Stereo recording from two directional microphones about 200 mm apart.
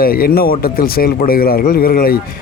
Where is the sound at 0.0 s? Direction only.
45° left (ahead or behind).